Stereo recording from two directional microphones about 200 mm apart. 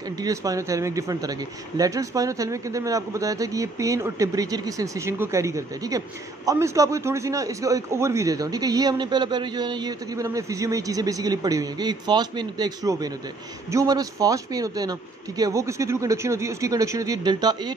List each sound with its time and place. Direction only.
0.2 s speech: 15° right (ahead or behind)